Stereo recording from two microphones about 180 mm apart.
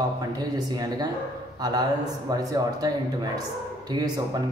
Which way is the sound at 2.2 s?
20° right (ahead or behind).